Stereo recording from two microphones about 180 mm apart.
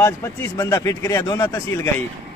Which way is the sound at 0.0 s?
15° left (ahead or behind).